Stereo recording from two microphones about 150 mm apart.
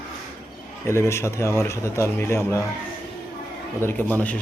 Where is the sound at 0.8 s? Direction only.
15° left (ahead or behind).